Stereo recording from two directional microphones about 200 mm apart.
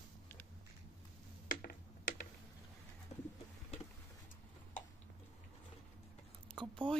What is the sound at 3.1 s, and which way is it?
Pigeon, 35° left (ahead or behind).